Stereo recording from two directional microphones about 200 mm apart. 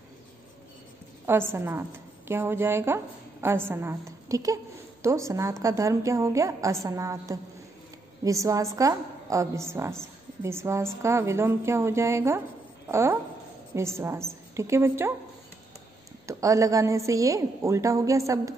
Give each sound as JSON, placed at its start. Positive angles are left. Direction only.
{"t": 1.2, "sound": "a woman's voice", "side_deg": -10}
{"t": 16.3, "sound": "a woman's voice", "side_deg": -15}